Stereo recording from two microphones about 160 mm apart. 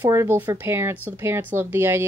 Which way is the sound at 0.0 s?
15° right (ahead or behind).